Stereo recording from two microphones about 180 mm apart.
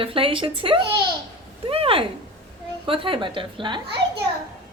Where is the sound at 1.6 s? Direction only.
30° right (ahead or behind).